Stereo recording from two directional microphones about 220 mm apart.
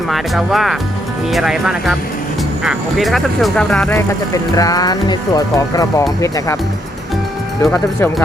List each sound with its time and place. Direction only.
0.1 s speech: centre (ahead or behind)
4.5 s speech: 15° left (ahead or behind)
7.6 s speech: 10° left (ahead or behind)